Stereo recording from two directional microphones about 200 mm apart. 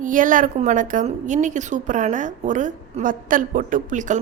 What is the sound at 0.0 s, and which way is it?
A woman's voice, 40° right (ahead or behind).